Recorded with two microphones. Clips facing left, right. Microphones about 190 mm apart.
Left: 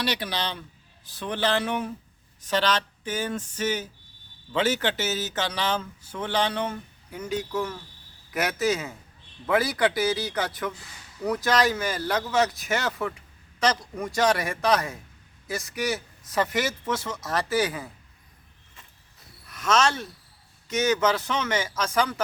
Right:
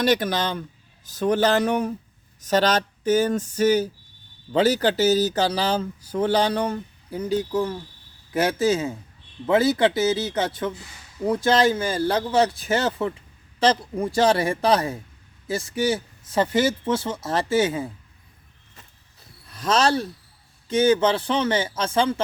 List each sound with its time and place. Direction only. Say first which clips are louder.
0.0 s a man's voice: right 8 dB; 45° right (ahead or behind); by 17.9 s 25° right (ahead or behind)
19.5 s a man's voice: right 3 dB; 30° right (ahead or behind)